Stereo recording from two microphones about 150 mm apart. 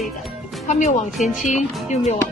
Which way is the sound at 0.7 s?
50° left (ahead or behind).